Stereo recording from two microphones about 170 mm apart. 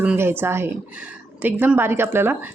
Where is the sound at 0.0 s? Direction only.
10° right (ahead or behind).